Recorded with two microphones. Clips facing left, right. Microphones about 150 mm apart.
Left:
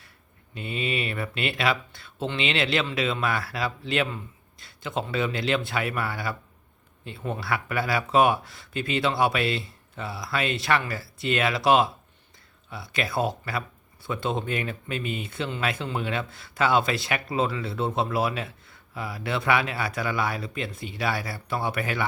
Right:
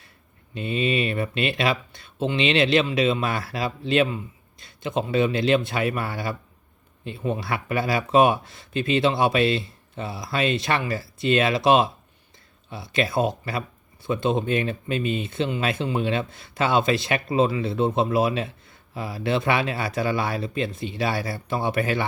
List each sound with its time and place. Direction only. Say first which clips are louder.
0.5 s speech: right 6 dB; 25° right (ahead or behind)